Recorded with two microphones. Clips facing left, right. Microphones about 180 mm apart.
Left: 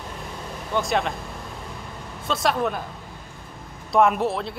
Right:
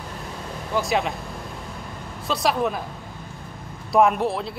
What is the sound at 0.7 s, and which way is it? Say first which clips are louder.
Speech: even; centre (ahead or behind).